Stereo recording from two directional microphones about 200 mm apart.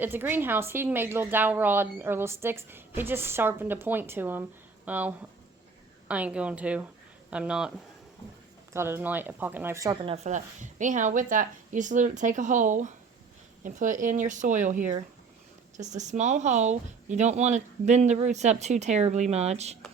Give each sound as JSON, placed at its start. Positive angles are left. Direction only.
{"t": 0.0, "sound": "a woman's voice", "side_deg": -10}
{"t": 8.7, "sound": "a woman's voice", "side_deg": -10}
{"t": 10.2, "sound": "speech", "side_deg": -40}